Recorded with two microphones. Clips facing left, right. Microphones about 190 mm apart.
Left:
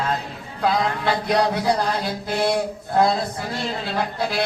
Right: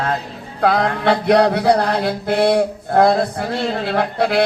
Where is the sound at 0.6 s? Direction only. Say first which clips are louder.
Right 5 dB; 65° right (ahead or behind).